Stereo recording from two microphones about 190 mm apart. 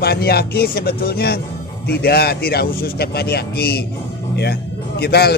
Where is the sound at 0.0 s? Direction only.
55° left (ahead or behind).